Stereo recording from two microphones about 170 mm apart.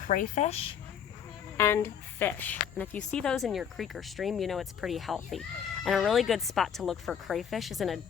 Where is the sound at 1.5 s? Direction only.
15° left (ahead or behind).